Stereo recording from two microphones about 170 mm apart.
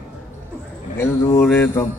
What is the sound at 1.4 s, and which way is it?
Speech, 10° left (ahead or behind).